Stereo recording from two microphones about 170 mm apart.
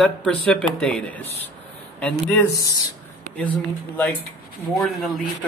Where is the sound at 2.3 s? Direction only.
15° left (ahead or behind).